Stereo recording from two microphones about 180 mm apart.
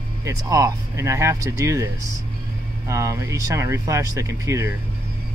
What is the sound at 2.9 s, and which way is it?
Speech, 15° right (ahead or behind).